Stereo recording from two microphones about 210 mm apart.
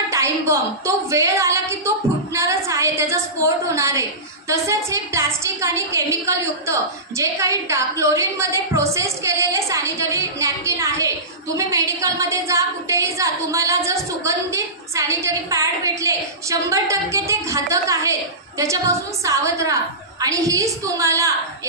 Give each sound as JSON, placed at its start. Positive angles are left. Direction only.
{"t": 0.1, "sound": "a woman's voice", "side_deg": -15}
{"t": 2.3, "sound": "a sound", "side_deg": -15}
{"t": 4.5, "sound": "a woman's voice", "side_deg": -15}